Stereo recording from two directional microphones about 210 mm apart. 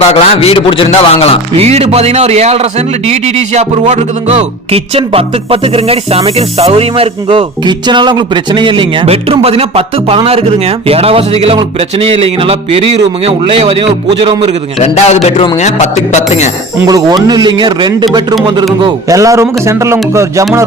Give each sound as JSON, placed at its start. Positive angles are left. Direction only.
{"t": 0.0, "sound": "a man's voice", "side_deg": 30}
{"t": 1.5, "sound": "a man's voice", "side_deg": -30}
{"t": 14.8, "sound": "a man's voice", "side_deg": 30}
{"t": 16.8, "sound": "a man's voice", "side_deg": -15}